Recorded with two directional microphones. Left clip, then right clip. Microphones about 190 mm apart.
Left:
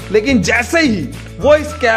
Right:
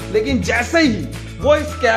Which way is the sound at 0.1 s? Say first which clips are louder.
Left 5 dB; 45° left (ahead or behind).